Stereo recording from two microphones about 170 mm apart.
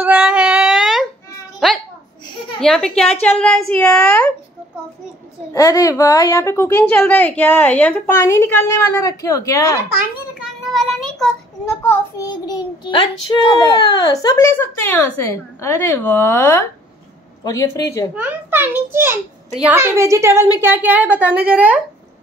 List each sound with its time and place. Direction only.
0.0 s a sound: 10° right (ahead or behind)
2.6 s a woman's voice: 5° left (ahead or behind)
5.5 s a woman's voice: 20° left (ahead or behind)
10.1 s child singing: 5° right (ahead or behind)
11.7 s a child's voice: 10° left (ahead or behind)
18.1 s a woman's voice: 10° right (ahead or behind)